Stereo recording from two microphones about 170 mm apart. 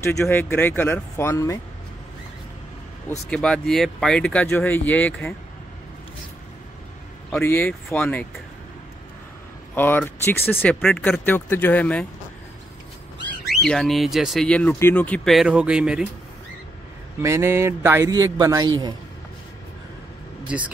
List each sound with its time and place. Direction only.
0.0 s speech: 15° left (ahead or behind)
3.3 s speech: 5° left (ahead or behind)
7.2 s speech: 10° left (ahead or behind)
9.8 s speech: 10° left (ahead or behind)
13.6 s speech: centre (ahead or behind)
17.2 s a man's voice: 15° right (ahead or behind)
20.4 s speech: 10° right (ahead or behind)